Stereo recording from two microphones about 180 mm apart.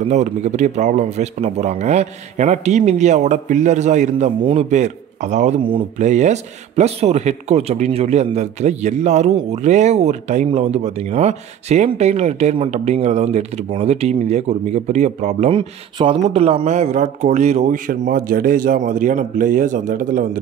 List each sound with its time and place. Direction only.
0.1 s speech: 40° right (ahead or behind)
5.6 s speech: 30° right (ahead or behind)
5.9 s speech: 40° right (ahead or behind)